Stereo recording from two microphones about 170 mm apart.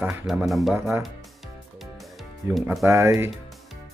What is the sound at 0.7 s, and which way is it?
Speech, 10° right (ahead or behind).